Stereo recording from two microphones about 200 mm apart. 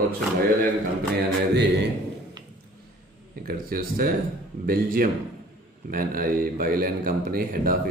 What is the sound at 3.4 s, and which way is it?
Speech, 45° right (ahead or behind).